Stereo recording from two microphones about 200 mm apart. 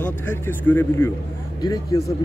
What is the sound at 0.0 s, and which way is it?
A man's voice, 10° left (ahead or behind).